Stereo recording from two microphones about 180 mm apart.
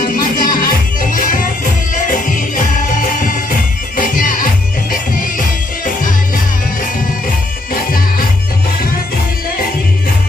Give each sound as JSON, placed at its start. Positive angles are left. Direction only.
{"t": 0.0, "sound": "music", "side_deg": 50}
{"t": 3.0, "sound": "music", "side_deg": 45}